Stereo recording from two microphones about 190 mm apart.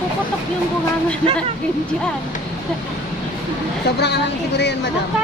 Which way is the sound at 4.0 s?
60° left (ahead or behind).